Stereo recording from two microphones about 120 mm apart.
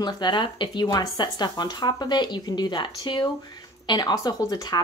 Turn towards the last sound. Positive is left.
turn(degrees=35)  # may be behind; listen again after turning